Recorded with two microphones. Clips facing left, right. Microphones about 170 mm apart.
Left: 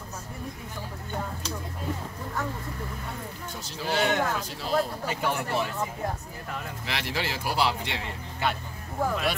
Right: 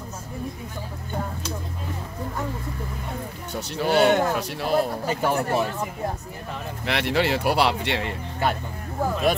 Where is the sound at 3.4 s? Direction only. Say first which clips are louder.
Right 8 dB; 70° right (ahead or behind).